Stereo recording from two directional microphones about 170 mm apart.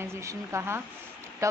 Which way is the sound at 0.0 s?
15° right (ahead or behind).